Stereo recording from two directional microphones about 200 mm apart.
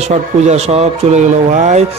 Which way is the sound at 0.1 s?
35° right (ahead or behind).